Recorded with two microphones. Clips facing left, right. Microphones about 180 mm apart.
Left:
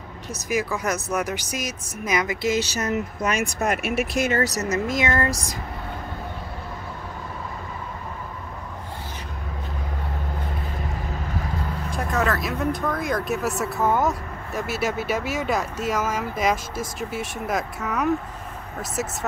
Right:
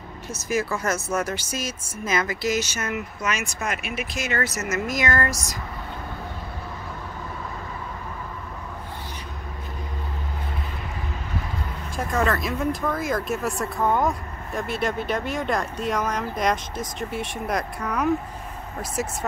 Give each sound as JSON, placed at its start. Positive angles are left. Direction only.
{"t": 0.5, "sound": "speech", "side_deg": 15}
{"t": 3.2, "sound": "speech", "side_deg": 55}
{"t": 3.5, "sound": "speech", "side_deg": 40}
{"t": 4.1, "sound": "speech", "side_deg": 55}
{"t": 4.4, "sound": "speech", "side_deg": 35}
{"t": 11.9, "sound": "speech", "side_deg": 0}